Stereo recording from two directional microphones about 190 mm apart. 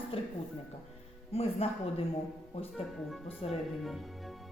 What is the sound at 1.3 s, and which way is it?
Speech, 30° left (ahead or behind).